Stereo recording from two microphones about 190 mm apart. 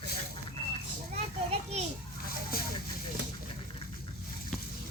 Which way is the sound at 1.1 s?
35° right (ahead or behind).